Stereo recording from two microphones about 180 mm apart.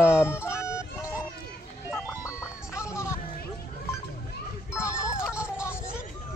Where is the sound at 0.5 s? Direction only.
15° left (ahead or behind).